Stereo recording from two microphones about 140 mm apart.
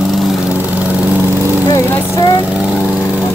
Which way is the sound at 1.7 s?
25° left (ahead or behind).